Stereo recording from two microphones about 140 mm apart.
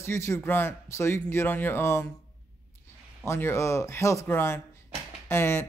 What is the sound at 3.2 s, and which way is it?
Speech, 20° left (ahead or behind).